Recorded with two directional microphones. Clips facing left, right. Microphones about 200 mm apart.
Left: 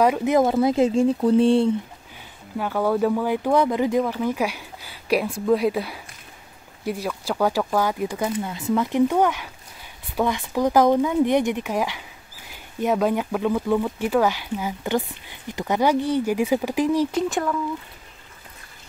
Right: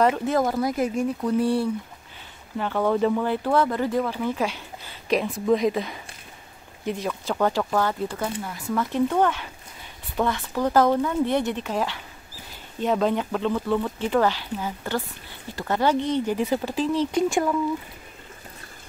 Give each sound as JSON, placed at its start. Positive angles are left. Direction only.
{"t": 0.0, "sound": "speech", "side_deg": 15}
{"t": 2.5, "sound": "speech", "side_deg": 10}
{"t": 7.2, "sound": "speech", "side_deg": 10}